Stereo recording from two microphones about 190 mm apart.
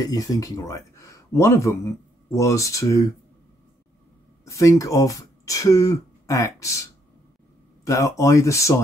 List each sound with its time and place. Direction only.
0.0 s speech: 20° left (ahead or behind)
4.5 s speech: 15° left (ahead or behind)